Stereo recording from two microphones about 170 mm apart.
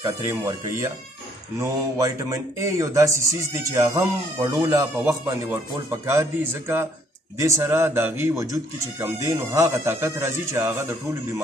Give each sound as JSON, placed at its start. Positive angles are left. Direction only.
{"t": 0.0, "sound": "speech", "side_deg": -20}